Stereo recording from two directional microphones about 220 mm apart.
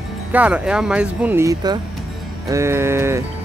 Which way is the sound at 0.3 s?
5° right (ahead or behind).